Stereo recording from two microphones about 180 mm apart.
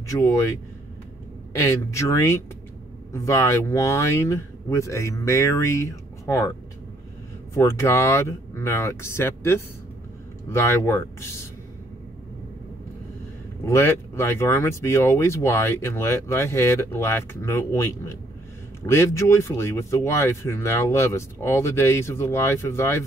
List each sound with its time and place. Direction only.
0.1 s speech: 15° left (ahead or behind)
1.7 s speech: 15° left (ahead or behind)
7.5 s speech: 15° left (ahead or behind)
13.7 s speech: 15° left (ahead or behind)